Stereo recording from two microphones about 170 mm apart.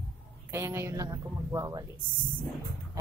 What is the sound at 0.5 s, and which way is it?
Speech, 15° right (ahead or behind).